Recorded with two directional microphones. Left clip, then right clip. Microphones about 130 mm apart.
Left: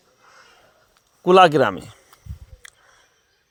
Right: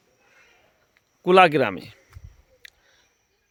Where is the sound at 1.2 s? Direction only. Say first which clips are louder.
Left 3 dB; 5° right (ahead or behind).